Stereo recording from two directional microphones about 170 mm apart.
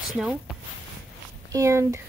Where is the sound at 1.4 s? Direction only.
20° right (ahead or behind).